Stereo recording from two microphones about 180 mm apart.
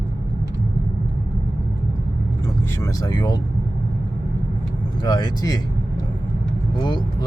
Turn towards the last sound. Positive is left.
turn(degrees=25)  # may be behind; listen again after turning